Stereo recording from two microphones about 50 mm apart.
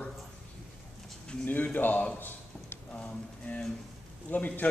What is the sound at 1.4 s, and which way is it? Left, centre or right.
Speech, left.